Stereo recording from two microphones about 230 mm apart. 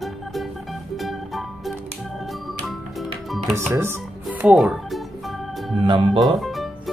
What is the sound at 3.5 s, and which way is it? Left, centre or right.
Speech, centre.